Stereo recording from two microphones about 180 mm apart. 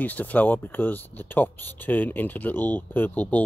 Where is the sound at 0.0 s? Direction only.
10° left (ahead or behind).